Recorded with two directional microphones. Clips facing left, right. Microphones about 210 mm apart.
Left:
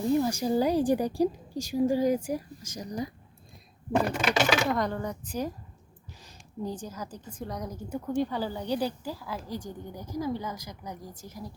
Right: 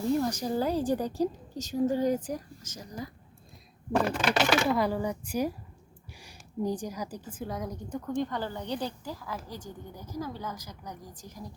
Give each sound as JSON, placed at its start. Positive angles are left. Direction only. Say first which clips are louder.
{"t": 0.1, "sound": "a woman's voice", "louder": "left 3 dB", "side_deg": 5}
{"t": 3.9, "sound": "a woman's voice", "louder": "left 1 dB", "side_deg": 0}